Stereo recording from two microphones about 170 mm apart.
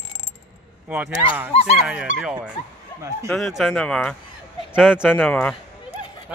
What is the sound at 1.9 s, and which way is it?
Speech, 5° right (ahead or behind).